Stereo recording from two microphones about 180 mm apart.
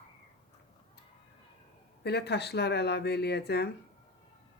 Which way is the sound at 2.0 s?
65° left (ahead or behind).